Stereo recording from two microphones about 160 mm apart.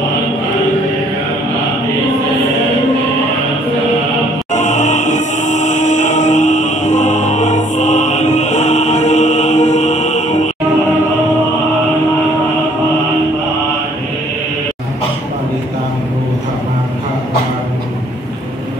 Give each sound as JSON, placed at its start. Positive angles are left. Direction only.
{"t": 4.5, "sound": "music", "side_deg": 50}